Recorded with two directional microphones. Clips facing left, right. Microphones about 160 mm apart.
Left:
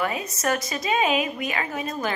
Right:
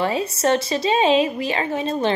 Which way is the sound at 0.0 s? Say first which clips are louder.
Right 6 dB; 30° right (ahead or behind).